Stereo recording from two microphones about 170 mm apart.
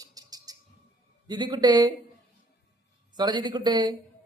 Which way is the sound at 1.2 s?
25° right (ahead or behind).